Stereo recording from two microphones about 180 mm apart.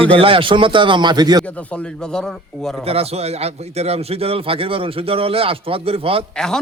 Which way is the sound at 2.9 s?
35° right (ahead or behind).